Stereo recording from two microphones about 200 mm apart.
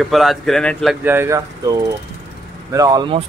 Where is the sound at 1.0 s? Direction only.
10° right (ahead or behind).